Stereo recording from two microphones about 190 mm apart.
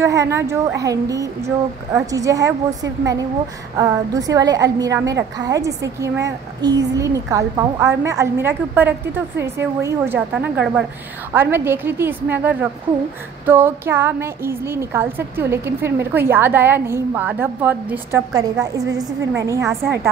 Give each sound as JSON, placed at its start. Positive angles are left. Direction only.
{"t": 0.0, "sound": "a woman's voice", "side_deg": -15}